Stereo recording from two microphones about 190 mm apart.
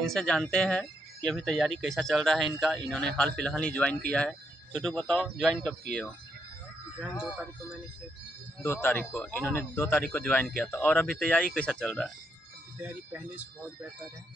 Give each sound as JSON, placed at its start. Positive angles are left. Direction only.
{"t": 0.0, "sound": "speech", "side_deg": 5}
{"t": 7.0, "sound": "speech", "side_deg": -5}
{"t": 8.6, "sound": "a man's voice", "side_deg": 10}
{"t": 12.8, "sound": "speech", "side_deg": -10}